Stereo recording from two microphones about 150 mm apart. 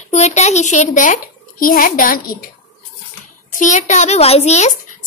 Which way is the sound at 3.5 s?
55° left (ahead or behind).